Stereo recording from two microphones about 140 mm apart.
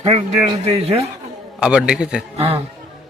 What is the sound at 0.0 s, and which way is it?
Speech, 45° right (ahead or behind).